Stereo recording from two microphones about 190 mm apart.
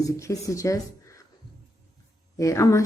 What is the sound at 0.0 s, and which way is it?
Speech, 15° left (ahead or behind).